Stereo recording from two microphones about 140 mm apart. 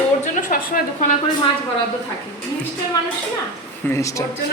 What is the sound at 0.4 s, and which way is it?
Speech, 90° left.